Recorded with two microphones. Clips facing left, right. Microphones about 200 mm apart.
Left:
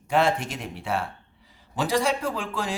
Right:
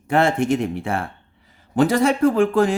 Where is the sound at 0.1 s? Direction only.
55° right (ahead or behind).